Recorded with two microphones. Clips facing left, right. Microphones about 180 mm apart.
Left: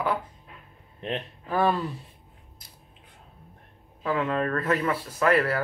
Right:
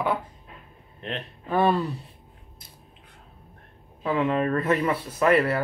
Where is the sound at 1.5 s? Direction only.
Centre (ahead or behind).